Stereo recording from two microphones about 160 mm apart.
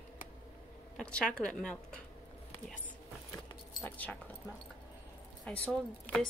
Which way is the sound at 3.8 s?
10° left (ahead or behind).